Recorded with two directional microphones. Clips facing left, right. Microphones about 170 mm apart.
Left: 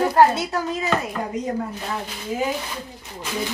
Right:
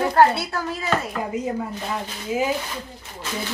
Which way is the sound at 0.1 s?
15° left (ahead or behind).